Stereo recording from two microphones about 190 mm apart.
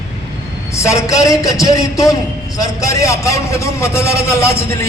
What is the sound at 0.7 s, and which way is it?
A man's voice, 15° left (ahead or behind).